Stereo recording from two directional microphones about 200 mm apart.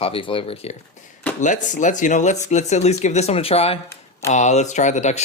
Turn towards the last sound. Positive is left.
turn(degrees=35)  # may be behind; listen again after turning